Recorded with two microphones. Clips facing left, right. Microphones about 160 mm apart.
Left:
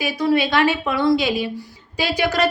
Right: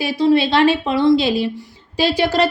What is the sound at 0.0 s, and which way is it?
Speech, 30° right (ahead or behind).